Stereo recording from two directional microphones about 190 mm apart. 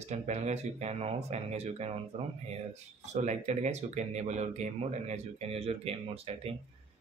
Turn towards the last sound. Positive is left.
turn(degrees=-30)  # may be behind; listen again after turning